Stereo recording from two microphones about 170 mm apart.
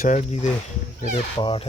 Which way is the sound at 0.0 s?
45° left (ahead or behind).